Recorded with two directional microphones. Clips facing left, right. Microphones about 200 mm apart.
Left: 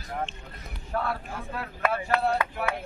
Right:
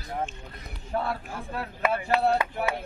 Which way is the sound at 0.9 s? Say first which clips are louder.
Right 1 dB; 20° right (ahead or behind).